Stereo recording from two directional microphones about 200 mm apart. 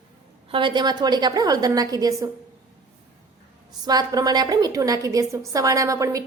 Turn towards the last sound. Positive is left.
turn(degrees=-15)  # may be behind; listen again after turning